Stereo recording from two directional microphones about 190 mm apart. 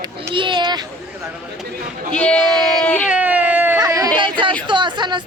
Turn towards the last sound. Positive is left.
turn(degrees=-25)  # may be behind; listen again after turning